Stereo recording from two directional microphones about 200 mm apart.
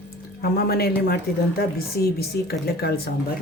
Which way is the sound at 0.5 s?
50° left (ahead or behind).